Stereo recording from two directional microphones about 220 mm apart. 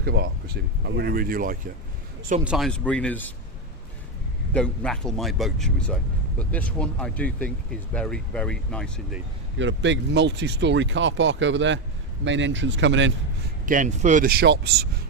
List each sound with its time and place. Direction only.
0.0 s speech: 45° right (ahead or behind)
2.4 s speech: 5° right (ahead or behind)
4.5 s speech: 5° left (ahead or behind)
9.6 s speech: 55° right (ahead or behind)
13.7 s speech: 35° right (ahead or behind)